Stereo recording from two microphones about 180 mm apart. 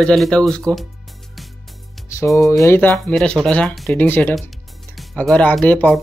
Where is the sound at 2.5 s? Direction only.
15° left (ahead or behind).